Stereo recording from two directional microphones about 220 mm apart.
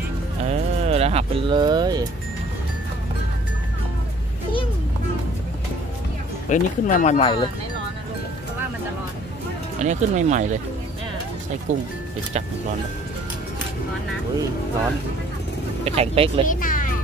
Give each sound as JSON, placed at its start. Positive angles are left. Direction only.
{"t": 0.5, "sound": "music", "side_deg": -30}
{"t": 6.5, "sound": "speech", "side_deg": 35}
{"t": 7.2, "sound": "speech", "side_deg": 20}
{"t": 9.8, "sound": "speech", "side_deg": -30}
{"t": 11.7, "sound": "speech", "side_deg": -35}
{"t": 15.8, "sound": "speech", "side_deg": -25}
{"t": 16.4, "sound": "speech", "side_deg": 40}